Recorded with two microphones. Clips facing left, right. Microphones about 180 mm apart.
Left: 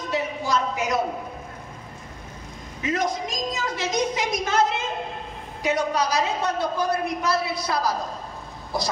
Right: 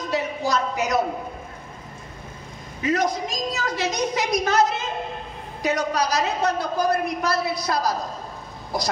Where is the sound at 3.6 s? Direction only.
35° right (ahead or behind).